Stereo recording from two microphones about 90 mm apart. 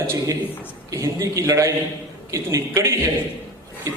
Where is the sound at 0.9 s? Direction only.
35° right (ahead or behind).